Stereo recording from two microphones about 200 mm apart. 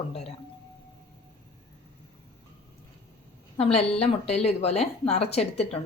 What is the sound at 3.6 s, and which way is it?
A woman's voice, 30° left (ahead or behind).